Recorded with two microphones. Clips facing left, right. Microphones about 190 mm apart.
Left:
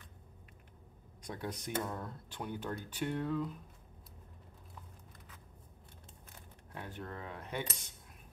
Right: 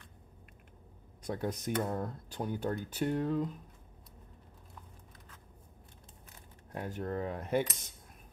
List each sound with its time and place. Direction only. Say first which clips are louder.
1.2 s speech: right 6 dB; 45° right (ahead or behind)
6.7 s speech: right 8 dB; 40° right (ahead or behind)